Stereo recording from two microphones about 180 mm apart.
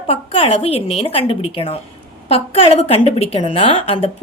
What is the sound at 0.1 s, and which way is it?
A woman's voice, 30° left (ahead or behind).